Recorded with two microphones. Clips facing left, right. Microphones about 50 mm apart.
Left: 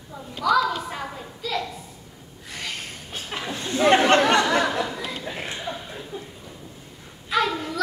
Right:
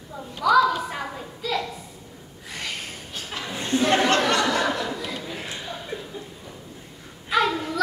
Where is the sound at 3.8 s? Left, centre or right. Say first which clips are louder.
Left 4 dB; left.